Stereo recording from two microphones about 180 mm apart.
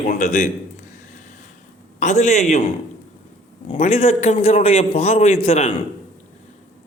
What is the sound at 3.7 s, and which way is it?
Speech, 35° left (ahead or behind).